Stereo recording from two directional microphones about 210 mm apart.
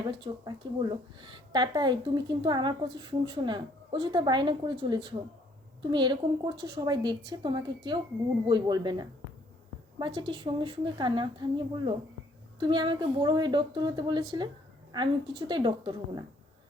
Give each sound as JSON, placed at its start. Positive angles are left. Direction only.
{"t": 0.1, "sound": "a woman's voice", "side_deg": -20}